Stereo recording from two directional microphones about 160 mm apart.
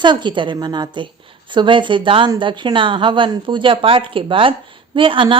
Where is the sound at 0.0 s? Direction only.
30° right (ahead or behind).